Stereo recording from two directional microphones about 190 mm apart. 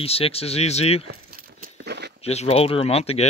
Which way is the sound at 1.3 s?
50° right (ahead or behind).